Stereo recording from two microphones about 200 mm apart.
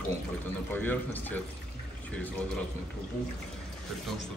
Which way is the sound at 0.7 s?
10° left (ahead or behind).